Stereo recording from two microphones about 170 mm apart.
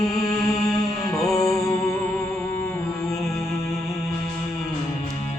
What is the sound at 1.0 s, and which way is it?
Music, 20° left (ahead or behind).